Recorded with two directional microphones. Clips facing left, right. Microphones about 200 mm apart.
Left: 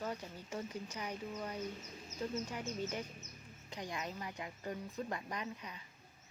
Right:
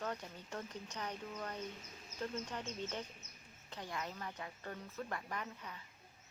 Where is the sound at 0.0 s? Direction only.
10° left (ahead or behind).